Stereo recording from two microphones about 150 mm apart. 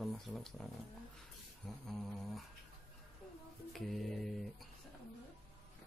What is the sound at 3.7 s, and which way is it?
Speech, centre (ahead or behind).